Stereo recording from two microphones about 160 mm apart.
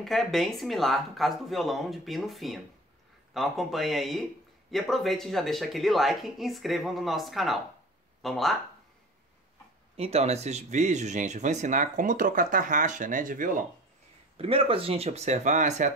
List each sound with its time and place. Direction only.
0.0 s speech: centre (ahead or behind)
9.9 s speech: 40° right (ahead or behind); by 13.7 s 55° right (ahead or behind)
14.3 s speech: 35° right (ahead or behind)